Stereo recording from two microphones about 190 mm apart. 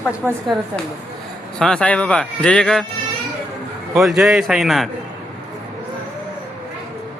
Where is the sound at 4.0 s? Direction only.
Centre (ahead or behind).